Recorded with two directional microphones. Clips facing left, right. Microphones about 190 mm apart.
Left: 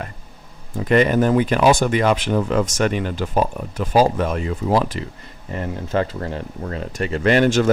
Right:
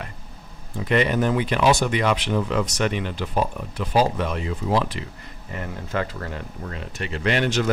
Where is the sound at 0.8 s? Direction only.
45° left (ahead or behind).